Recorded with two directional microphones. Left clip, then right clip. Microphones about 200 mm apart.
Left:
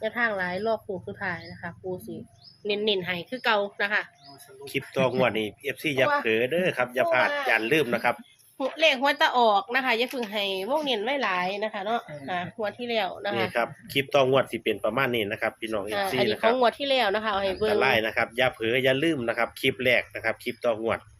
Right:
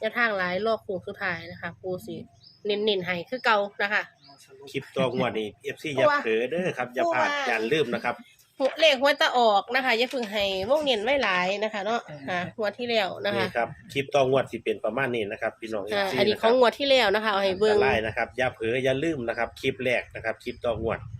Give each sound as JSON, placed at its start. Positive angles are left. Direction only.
{"t": 0.0, "sound": "a woman's voice", "side_deg": -10}
{"t": 4.6, "sound": "speech", "side_deg": 25}
{"t": 8.8, "sound": "a woman's voice", "side_deg": -10}
{"t": 13.5, "sound": "speech", "side_deg": 25}
{"t": 15.9, "sound": "speech", "side_deg": -20}
{"t": 17.7, "sound": "speech", "side_deg": 25}